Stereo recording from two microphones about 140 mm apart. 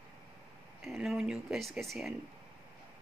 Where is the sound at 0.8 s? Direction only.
5° right (ahead or behind).